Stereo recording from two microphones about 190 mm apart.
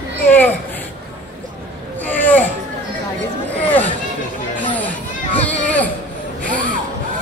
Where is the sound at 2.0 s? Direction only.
10° left (ahead or behind).